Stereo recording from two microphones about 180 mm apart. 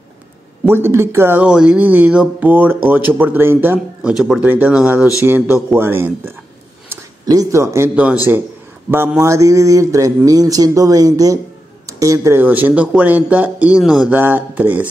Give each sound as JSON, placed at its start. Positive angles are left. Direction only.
{"t": 0.7, "sound": "speech", "side_deg": -10}